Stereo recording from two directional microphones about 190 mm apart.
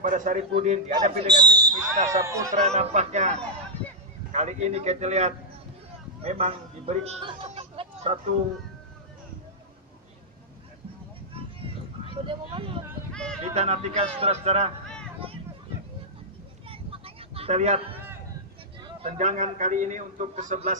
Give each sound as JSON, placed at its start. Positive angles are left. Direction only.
{"t": 0.0, "sound": "a man's voice", "side_deg": -45}
{"t": 1.2, "sound": "speech", "side_deg": -20}
{"t": 2.5, "sound": "a man's voice", "side_deg": -35}
{"t": 12.1, "sound": "speech", "side_deg": -25}
{"t": 13.1, "sound": "speech", "side_deg": 5}
{"t": 13.4, "sound": "a man's voice", "side_deg": -35}
{"t": 16.6, "sound": "a sound", "side_deg": -30}
{"t": 19.1, "sound": "a man's voice", "side_deg": -40}